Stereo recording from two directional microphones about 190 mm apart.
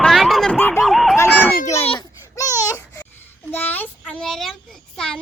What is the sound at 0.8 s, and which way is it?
Speech, centre (ahead or behind).